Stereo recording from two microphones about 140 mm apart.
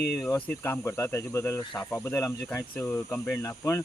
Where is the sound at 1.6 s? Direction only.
35° left (ahead or behind).